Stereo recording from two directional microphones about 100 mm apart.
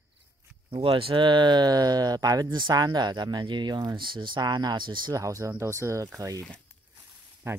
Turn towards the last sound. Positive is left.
turn(degrees=-25)  # may be behind; listen again after turning